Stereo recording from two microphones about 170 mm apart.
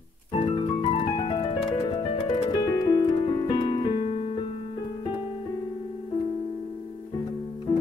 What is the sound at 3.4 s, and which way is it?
Music, 25° left (ahead or behind).